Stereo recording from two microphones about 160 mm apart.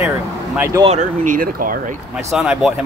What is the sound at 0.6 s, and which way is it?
Speech, 20° right (ahead or behind).